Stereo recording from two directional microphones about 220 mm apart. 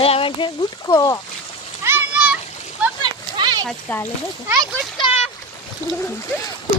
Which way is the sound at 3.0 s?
20° right (ahead or behind).